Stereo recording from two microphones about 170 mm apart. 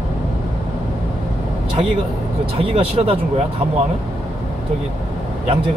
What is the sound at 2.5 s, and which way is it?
Speech, 35° right (ahead or behind).